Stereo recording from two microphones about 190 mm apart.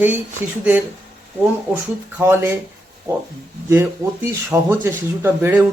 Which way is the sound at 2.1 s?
10° right (ahead or behind).